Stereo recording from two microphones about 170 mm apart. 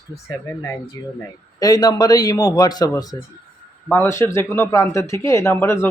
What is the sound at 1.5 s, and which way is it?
A man's voice, 20° left (ahead or behind).